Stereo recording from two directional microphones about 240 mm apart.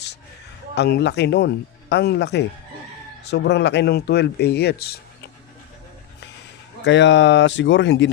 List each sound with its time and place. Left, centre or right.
0.8 s speech: left
6.8 s speech: left